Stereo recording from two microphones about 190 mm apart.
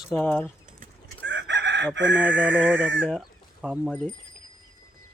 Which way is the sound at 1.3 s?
70° right (ahead or behind).